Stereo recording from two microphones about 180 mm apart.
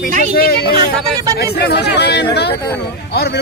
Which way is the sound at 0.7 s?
20° right (ahead or behind).